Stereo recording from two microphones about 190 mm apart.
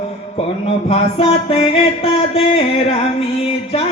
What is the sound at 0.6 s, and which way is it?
Music, 30° left (ahead or behind).